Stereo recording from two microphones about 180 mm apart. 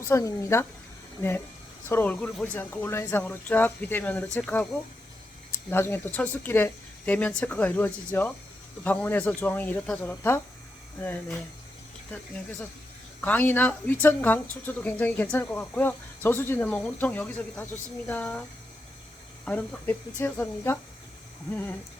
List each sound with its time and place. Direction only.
0.1 s speech: 15° left (ahead or behind)
1.9 s speech: 10° left (ahead or behind)
19.5 s speech: 10° left (ahead or behind)